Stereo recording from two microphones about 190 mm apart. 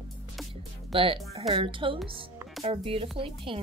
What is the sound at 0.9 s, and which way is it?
A woman's voice, 30° right (ahead or behind).